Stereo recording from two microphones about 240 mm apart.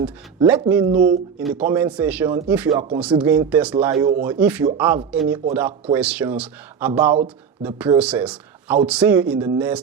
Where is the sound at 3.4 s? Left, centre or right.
Centre.